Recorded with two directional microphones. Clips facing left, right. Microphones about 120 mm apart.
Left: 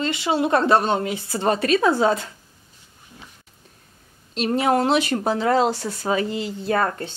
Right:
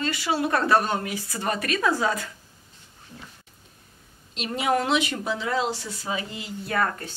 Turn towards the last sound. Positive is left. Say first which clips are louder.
# left 4 dB
turn(degrees=30)  # may be behind; listen again after turning